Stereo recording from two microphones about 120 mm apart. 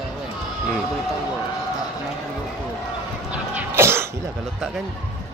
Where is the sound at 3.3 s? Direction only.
10° right (ahead or behind).